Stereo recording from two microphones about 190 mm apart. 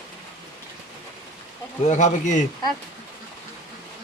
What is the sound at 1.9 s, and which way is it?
Speech, 40° left (ahead or behind).